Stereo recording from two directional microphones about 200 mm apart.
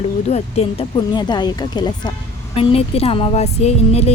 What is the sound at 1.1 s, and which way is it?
Speech, 20° left (ahead or behind).